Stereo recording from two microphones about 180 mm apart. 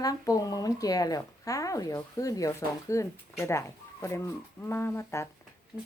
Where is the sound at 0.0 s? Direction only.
20° left (ahead or behind).